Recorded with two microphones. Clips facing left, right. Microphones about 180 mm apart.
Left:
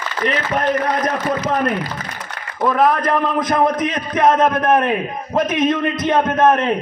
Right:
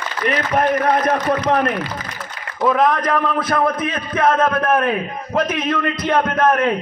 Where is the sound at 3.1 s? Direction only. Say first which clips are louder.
Left 1 dB; 15° left (ahead or behind).